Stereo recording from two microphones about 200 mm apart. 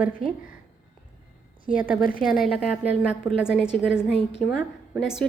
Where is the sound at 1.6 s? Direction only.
5° right (ahead or behind).